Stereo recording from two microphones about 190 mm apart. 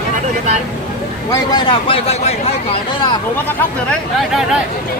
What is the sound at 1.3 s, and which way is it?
Speech, 20° left (ahead or behind).